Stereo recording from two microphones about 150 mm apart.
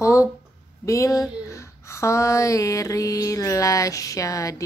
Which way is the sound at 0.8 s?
20° left (ahead or behind).